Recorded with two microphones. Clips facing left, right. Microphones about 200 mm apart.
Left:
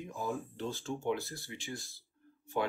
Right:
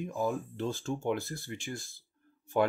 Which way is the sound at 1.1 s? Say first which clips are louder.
Right 1 dB; 55° right (ahead or behind).